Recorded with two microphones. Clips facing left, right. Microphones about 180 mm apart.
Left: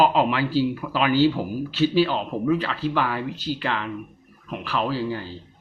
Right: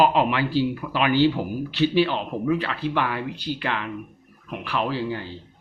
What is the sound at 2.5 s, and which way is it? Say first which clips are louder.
Speech: left 1 dB; 40° left (ahead or behind).